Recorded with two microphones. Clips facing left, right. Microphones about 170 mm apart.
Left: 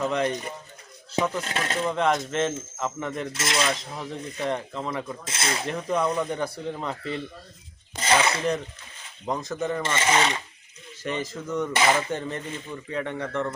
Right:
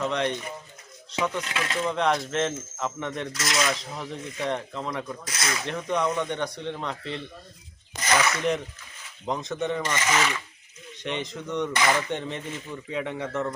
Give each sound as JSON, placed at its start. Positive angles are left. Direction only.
{"t": 0.0, "sound": "speech", "side_deg": 5}
{"t": 1.3, "sound": "speech", "side_deg": 35}
{"t": 1.9, "sound": "speech", "side_deg": 0}
{"t": 3.3, "sound": "speech", "side_deg": 25}
{"t": 3.9, "sound": "speech", "side_deg": 0}
{"t": 5.2, "sound": "speech", "side_deg": 25}
{"t": 5.6, "sound": "speech", "side_deg": 5}
{"t": 7.9, "sound": "speech", "side_deg": 25}
{"t": 9.2, "sound": "speech", "side_deg": 0}
{"t": 9.8, "sound": "speech", "side_deg": 25}
{"t": 10.9, "sound": "speech", "side_deg": 0}
{"t": 11.7, "sound": "speech", "side_deg": 25}
{"t": 12.1, "sound": "speech", "side_deg": 0}